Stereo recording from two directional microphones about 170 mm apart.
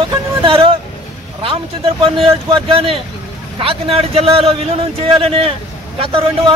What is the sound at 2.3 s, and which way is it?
Speech, 35° right (ahead or behind).